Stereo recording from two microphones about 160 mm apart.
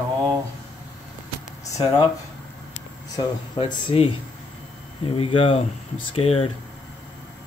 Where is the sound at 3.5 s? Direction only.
35° left (ahead or behind).